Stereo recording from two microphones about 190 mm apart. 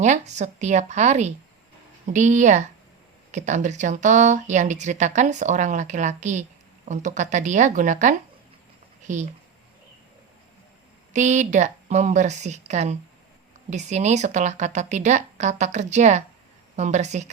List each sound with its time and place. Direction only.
0.0 s speech: 40° right (ahead or behind)
11.1 s speech: 40° right (ahead or behind)